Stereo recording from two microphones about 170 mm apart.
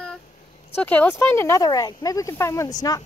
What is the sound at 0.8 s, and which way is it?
Speech, 10° left (ahead or behind).